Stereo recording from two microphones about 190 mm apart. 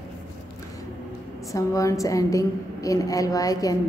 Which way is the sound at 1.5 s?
15° left (ahead or behind).